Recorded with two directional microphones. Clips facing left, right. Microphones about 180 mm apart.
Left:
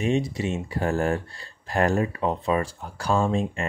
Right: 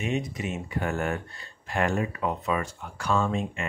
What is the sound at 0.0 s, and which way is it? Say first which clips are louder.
Speech: left 5 dB; 30° left (ahead or behind).